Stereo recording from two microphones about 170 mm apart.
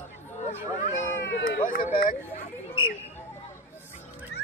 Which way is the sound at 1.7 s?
55° left (ahead or behind).